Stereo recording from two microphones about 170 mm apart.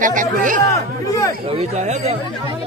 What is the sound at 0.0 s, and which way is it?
Speech, 50° right (ahead or behind).